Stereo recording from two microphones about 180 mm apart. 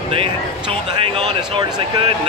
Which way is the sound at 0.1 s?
30° right (ahead or behind).